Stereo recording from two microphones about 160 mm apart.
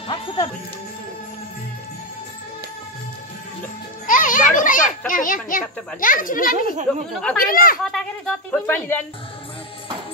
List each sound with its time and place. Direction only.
4.1 s a child's voice: 55° left (ahead or behind)
7.9 s speech: 5° left (ahead or behind)